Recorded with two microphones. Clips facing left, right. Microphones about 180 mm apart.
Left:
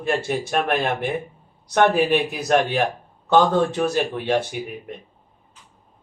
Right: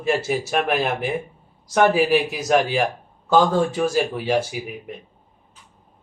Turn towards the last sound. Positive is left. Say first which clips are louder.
# even
turn(degrees=-5)  # may be behind; listen again after turning